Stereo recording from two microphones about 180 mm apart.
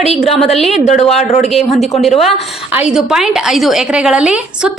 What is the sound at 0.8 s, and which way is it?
Speech, 40° left (ahead or behind).